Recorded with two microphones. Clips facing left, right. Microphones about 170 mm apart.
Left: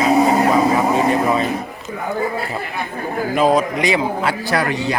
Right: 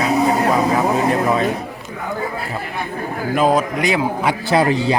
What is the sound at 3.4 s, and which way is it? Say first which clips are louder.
Speech: even; centre (ahead or behind).